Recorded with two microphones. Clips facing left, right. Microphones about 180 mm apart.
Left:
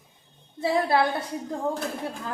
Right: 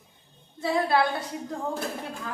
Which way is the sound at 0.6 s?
20° left (ahead or behind).